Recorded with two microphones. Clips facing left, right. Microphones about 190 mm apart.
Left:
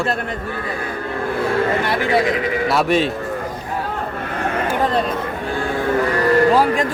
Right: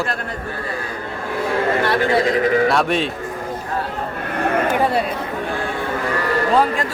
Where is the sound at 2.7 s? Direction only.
Centre (ahead or behind).